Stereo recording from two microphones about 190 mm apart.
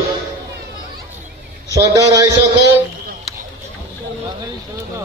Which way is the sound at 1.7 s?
20° right (ahead or behind).